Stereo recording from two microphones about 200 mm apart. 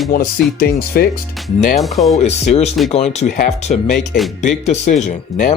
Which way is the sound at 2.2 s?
35° left (ahead or behind).